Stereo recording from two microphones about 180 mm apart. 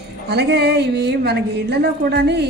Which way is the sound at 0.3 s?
65° right (ahead or behind).